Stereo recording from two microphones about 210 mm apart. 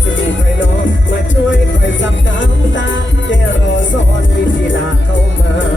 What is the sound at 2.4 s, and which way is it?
Music, 60° left (ahead or behind).